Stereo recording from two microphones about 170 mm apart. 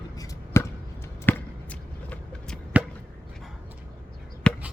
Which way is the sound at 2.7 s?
10° right (ahead or behind).